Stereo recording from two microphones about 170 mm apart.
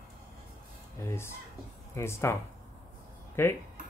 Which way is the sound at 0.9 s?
15° left (ahead or behind).